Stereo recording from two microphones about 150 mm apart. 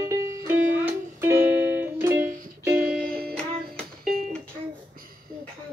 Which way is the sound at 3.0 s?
75° right (ahead or behind).